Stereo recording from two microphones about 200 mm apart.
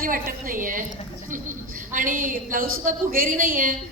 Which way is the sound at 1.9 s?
40° right (ahead or behind).